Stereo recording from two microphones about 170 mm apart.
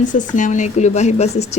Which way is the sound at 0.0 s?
50° left (ahead or behind).